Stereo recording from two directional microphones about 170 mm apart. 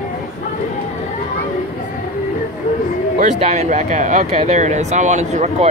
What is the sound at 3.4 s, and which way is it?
Speech, 45° right (ahead or behind).